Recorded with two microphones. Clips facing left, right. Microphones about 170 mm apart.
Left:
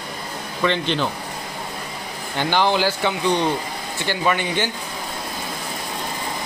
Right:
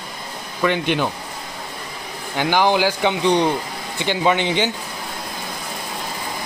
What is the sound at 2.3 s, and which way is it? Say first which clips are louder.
Speech: right 2 dB; 10° right (ahead or behind).